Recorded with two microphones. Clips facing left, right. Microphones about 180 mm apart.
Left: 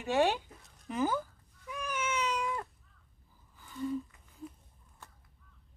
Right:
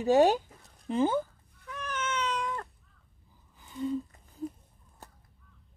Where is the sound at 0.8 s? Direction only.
30° right (ahead or behind).